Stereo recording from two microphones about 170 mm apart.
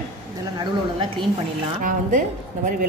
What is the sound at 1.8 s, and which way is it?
Speech, 50° right (ahead or behind).